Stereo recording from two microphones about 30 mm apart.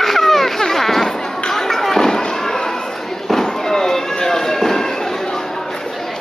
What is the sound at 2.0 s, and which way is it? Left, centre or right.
Fireworks, centre.